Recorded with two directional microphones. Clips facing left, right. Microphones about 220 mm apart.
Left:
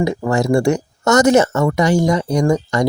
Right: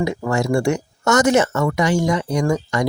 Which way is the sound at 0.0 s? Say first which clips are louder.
Left 3 dB; 35° left (ahead or behind).